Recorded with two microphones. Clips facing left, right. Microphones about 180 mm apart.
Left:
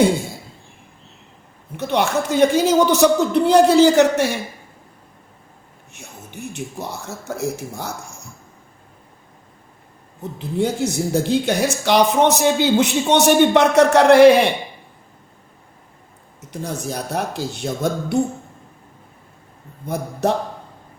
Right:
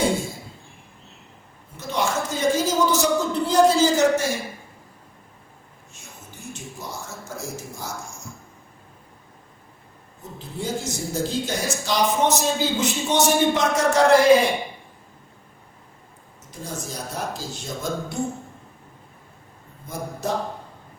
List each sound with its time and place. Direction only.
1.7 s speech: 65° left (ahead or behind)
5.9 s speech: 65° left (ahead or behind)
10.3 s speech: 65° left (ahead or behind)
16.5 s speech: 65° left (ahead or behind)
20.2 s speech: 65° left (ahead or behind)